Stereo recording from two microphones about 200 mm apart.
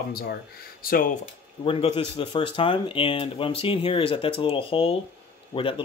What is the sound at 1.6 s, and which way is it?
Speech, 25° left (ahead or behind).